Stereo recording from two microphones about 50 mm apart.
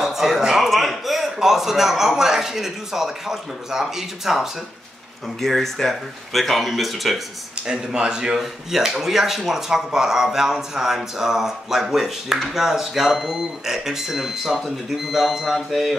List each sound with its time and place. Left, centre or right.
0.0 s a man's voice: centre
5.4 s speech: centre
7.6 s a man's voice: centre
8.4 s a man's voice: centre